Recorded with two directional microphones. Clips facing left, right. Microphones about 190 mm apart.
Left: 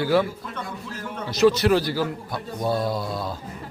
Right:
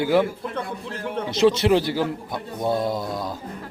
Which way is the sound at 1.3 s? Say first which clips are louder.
Even; 25° right (ahead or behind).